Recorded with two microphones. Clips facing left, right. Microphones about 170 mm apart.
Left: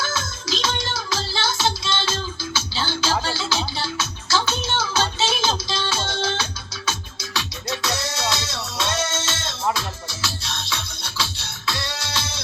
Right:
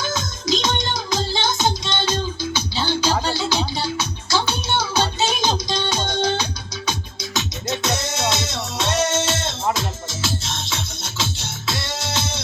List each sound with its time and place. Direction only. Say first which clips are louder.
0.0 s music: right 3 dB; 15° right (ahead or behind)